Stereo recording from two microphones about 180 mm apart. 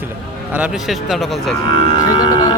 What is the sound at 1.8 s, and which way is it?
Speech, 25° left (ahead or behind).